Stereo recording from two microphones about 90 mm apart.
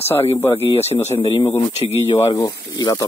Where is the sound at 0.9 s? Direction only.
90° left.